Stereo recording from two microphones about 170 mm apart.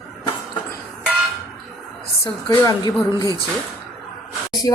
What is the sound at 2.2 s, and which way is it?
Speech, 20° left (ahead or behind).